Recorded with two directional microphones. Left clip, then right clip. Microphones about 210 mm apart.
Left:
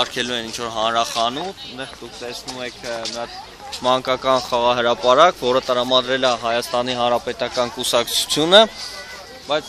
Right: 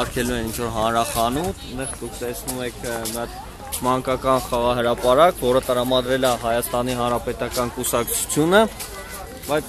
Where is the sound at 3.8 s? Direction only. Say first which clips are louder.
Left 3 dB; 45° left (ahead or behind).